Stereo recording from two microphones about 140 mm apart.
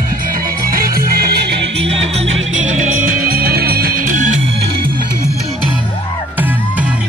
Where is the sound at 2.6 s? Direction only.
60° right (ahead or behind).